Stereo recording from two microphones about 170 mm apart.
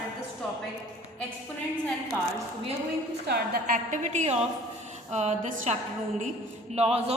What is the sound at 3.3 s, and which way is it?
A woman's voice, 60° right (ahead or behind).